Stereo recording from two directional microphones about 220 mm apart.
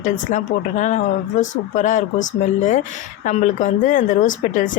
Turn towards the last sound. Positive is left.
turn(degrees=35)  # may be behind; listen again after turning